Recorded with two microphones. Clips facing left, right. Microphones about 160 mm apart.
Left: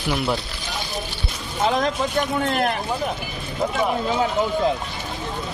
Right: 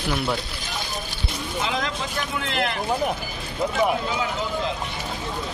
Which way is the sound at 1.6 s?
45° left (ahead or behind).